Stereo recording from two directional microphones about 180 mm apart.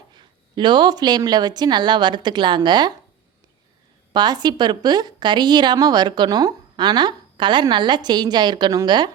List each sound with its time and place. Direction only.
0.2 s a woman's voice: 25° right (ahead or behind)
4.1 s a woman's voice: 25° right (ahead or behind)